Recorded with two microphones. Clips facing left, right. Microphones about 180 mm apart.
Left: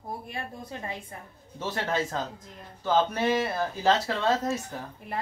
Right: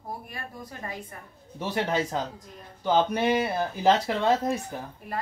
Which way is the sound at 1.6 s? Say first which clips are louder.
Right 2 dB; 15° right (ahead or behind).